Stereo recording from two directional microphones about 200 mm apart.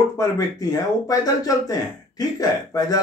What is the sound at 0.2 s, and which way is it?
Speech, 20° left (ahead or behind).